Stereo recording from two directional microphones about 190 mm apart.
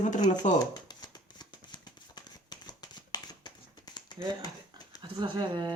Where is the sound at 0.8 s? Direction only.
20° left (ahead or behind).